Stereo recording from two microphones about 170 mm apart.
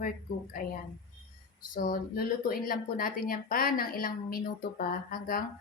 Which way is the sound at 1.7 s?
55° left (ahead or behind).